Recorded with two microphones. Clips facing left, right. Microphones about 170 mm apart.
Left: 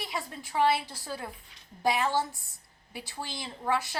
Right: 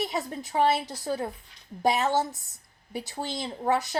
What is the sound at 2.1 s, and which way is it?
Speech, 20° right (ahead or behind).